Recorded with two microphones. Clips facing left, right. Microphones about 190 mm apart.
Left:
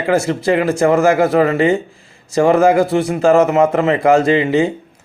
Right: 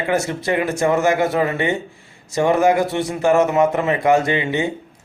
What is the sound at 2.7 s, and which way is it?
A man's voice, 30° left (ahead or behind).